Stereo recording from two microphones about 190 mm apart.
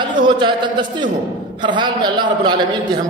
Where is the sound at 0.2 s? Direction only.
25° right (ahead or behind).